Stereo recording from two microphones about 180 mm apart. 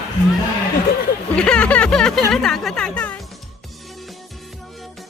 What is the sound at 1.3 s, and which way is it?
Speech, 5° left (ahead or behind).